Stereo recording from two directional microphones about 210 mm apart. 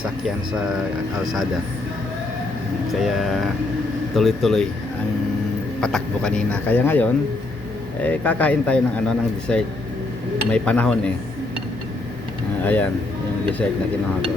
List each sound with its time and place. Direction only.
1.2 s speech: 20° right (ahead or behind)
3.0 s speech: centre (ahead or behind)
5.8 s speech: 5° left (ahead or behind)
12.6 s speech: 5° left (ahead or behind)